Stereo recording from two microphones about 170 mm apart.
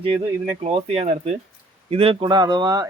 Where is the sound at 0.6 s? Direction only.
35° right (ahead or behind).